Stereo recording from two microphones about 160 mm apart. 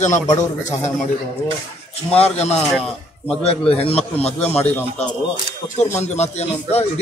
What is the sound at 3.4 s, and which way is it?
Speech, 40° left (ahead or behind).